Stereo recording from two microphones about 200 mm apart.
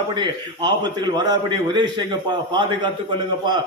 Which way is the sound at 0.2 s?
20° right (ahead or behind).